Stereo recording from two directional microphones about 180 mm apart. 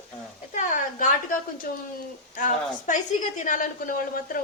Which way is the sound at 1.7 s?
55° left (ahead or behind).